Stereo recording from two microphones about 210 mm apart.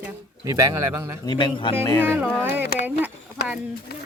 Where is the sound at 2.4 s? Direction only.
10° right (ahead or behind).